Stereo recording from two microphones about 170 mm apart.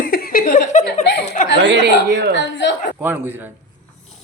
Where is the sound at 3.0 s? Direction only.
10° right (ahead or behind).